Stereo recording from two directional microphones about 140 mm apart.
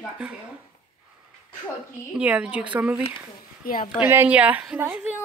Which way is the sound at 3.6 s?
90° left.